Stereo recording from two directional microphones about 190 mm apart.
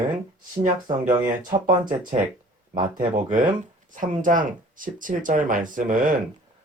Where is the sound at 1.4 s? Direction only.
45° right (ahead or behind).